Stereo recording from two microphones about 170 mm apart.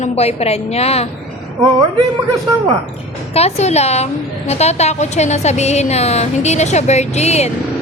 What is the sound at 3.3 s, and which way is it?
A woman's voice, 40° left (ahead or behind).